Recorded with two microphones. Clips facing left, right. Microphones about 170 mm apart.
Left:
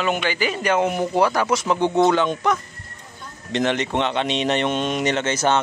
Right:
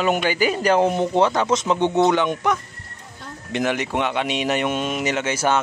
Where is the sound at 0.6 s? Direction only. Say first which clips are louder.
Right 2 dB; 35° right (ahead or behind).